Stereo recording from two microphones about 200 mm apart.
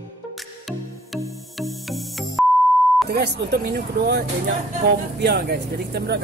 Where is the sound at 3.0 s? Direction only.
55° right (ahead or behind).